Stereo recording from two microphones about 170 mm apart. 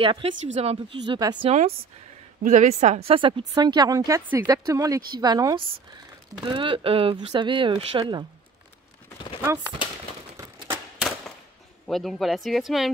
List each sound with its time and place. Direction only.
0.0 s speech: 30° right (ahead or behind)
1.0 s speech: 25° right (ahead or behind)
2.4 s a woman's voice: 45° right (ahead or behind)
3.2 s speech: 30° right (ahead or behind)
10.3 s typewriter: 20° right (ahead or behind)
11.0 s a sound: centre (ahead or behind)
11.9 s speech: centre (ahead or behind)